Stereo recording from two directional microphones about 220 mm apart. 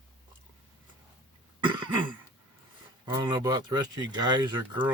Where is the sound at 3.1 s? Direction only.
20° right (ahead or behind).